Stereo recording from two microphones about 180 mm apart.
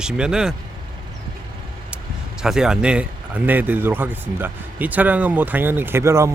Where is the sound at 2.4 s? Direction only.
5° right (ahead or behind).